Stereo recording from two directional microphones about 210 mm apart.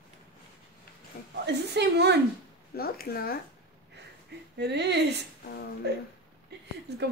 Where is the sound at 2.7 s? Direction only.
45° left (ahead or behind).